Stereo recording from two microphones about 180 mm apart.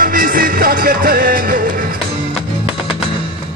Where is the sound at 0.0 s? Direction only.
50° right (ahead or behind).